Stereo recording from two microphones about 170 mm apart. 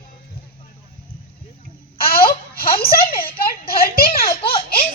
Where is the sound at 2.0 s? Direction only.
60° left (ahead or behind).